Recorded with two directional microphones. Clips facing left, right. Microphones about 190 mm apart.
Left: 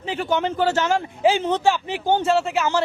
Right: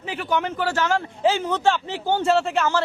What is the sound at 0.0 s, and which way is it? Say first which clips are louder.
Speech: left 2 dB; 25° left (ahead or behind).